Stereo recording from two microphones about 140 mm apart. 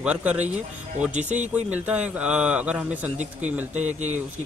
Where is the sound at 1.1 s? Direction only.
55° right (ahead or behind).